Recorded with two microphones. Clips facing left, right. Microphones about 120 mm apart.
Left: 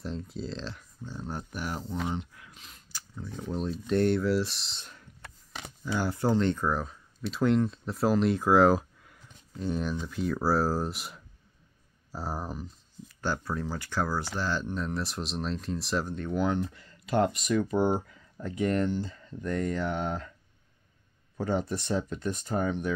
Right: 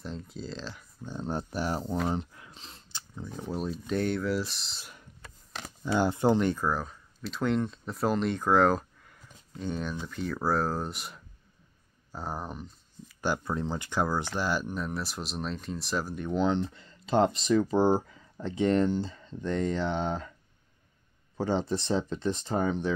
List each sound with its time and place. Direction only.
0.0 s speech: centre (ahead or behind)
1.0 s speech: 25° right (ahead or behind)
2.0 s a sound: 35° right (ahead or behind)
3.3 s speech: 5° right (ahead or behind)
5.9 s speech: 20° right (ahead or behind); by 11.1 s centre (ahead or behind)
12.1 s a sound: 5° left (ahead or behind)
13.2 s speech: 15° right (ahead or behind); by 16.2 s centre (ahead or behind)
16.2 s speech: 20° right (ahead or behind)
21.4 s speech: 30° right (ahead or behind)